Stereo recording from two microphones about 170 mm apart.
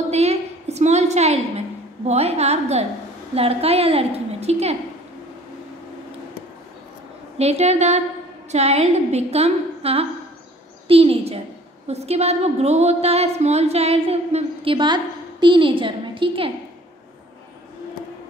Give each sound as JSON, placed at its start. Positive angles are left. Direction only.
{"t": 0.1, "sound": "a sound", "side_deg": -40}
{"t": 2.0, "sound": "a woman's voice", "side_deg": -40}
{"t": 7.3, "sound": "a woman's voice", "side_deg": -40}